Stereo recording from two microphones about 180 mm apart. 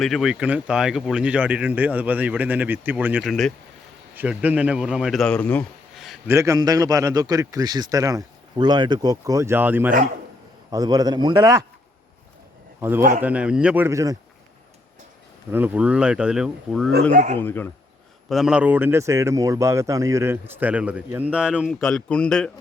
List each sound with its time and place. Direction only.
0.0 s a man's voice: centre (ahead or behind)
6.2 s a man's voice: 15° right (ahead or behind)
10.7 s a man's voice: 20° right (ahead or behind)
13.0 s speech: 45° right (ahead or behind)
13.2 s speech: 5° right (ahead or behind)
15.5 s speech: 10° right (ahead or behind)
16.9 s speech: 45° right (ahead or behind)
17.3 s speech: 10° left (ahead or behind)
18.3 s speech: centre (ahead or behind)